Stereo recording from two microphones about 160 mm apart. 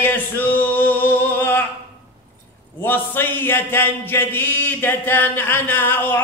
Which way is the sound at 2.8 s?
10° left (ahead or behind).